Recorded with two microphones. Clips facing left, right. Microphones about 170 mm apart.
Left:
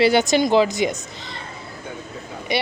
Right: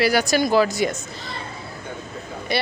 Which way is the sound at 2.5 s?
15° left (ahead or behind).